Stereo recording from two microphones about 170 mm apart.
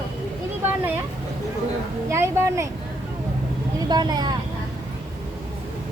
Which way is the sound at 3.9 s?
25° right (ahead or behind).